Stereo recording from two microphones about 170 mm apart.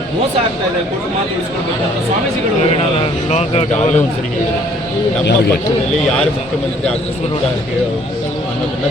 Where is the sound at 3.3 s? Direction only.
40° left (ahead or behind).